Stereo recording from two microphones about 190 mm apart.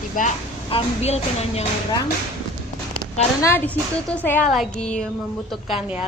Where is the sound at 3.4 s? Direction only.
10° left (ahead or behind).